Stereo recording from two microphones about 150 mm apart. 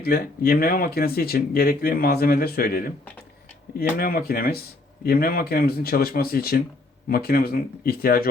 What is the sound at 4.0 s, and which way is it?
Speech, 80° left.